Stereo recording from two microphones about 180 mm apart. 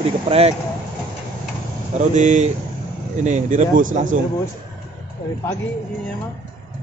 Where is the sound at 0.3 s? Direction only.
35° right (ahead or behind).